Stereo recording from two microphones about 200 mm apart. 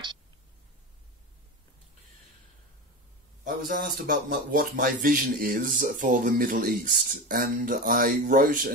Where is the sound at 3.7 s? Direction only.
45° right (ahead or behind).